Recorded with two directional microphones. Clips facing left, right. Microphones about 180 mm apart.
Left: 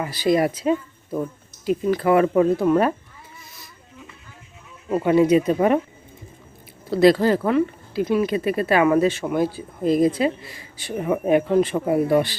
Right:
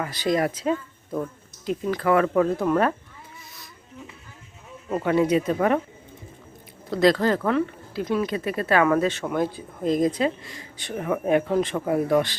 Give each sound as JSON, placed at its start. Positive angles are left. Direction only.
{"t": 0.0, "sound": "speech", "side_deg": 10}
{"t": 4.9, "sound": "speech", "side_deg": 15}
{"t": 6.9, "sound": "speech", "side_deg": 10}